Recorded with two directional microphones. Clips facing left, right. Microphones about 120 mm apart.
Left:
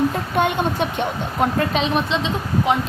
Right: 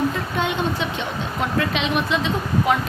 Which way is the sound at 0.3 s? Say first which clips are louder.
Left 6 dB; 55° left (ahead or behind).